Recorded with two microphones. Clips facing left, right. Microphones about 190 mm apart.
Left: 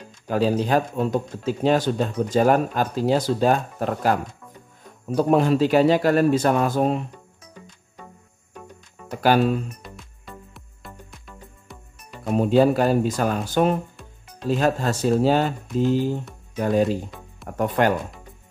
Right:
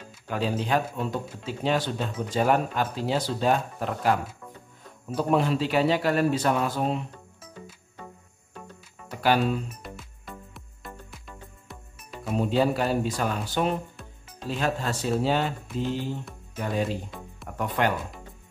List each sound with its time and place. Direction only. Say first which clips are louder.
0.3 s speech: left 6 dB; 40° left (ahead or behind)
9.2 s speech: left 5 dB; 45° left (ahead or behind)
9.9 s music: left 1 dB; centre (ahead or behind)
12.4 s speech: left 6 dB; 45° left (ahead or behind)
13.9 s music: left 1 dB; centre (ahead or behind)
14.5 s speech: left 7 dB; 45° left (ahead or behind)